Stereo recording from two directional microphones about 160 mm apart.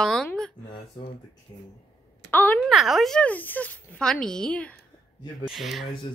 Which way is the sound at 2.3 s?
10° left (ahead or behind).